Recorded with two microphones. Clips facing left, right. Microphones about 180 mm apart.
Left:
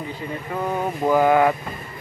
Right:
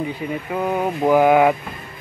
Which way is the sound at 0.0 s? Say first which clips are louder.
Right 5 dB; 15° right (ahead or behind).